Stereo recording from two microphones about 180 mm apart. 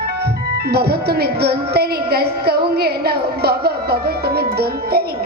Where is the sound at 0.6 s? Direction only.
65° right (ahead or behind).